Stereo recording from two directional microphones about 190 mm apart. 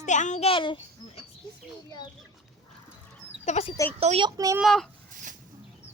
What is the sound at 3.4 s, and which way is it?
Speech, 35° left (ahead or behind).